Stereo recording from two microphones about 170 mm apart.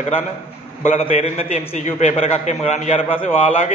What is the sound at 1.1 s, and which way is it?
A man's voice, 35° left (ahead or behind).